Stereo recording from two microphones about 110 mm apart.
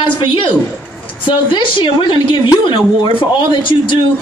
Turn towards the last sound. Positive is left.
turn(degrees=45)  # may be behind; listen again after turning